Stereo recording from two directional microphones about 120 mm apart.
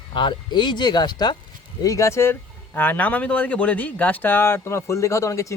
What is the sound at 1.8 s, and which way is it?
Speech, 25° left (ahead or behind).